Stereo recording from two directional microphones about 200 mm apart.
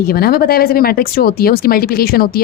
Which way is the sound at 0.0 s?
50° left (ahead or behind).